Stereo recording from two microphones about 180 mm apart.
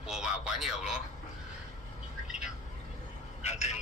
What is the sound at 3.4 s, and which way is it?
Vehicle, 40° left (ahead or behind).